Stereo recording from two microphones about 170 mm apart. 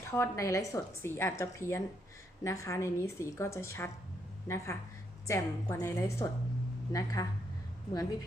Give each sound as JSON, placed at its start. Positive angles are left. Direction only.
{"t": 0.0, "sound": "a woman's voice", "side_deg": 15}